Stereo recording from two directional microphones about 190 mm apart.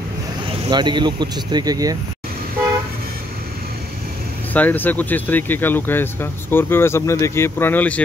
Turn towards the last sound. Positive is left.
turn(degrees=10)  # may be behind; listen again after turning